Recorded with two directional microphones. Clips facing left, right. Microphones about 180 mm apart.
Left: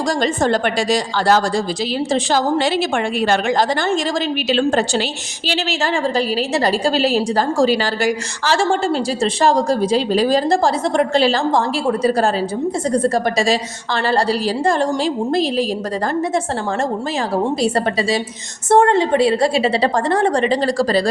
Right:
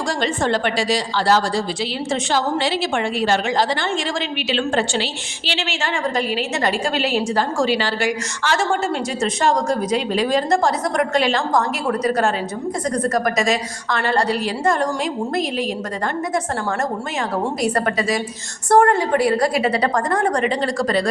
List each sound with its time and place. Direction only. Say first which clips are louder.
0.2 s a woman's voice: left 2 dB; 40° left (ahead or behind)
17.4 s a woman's voice: left 2 dB; 30° left (ahead or behind)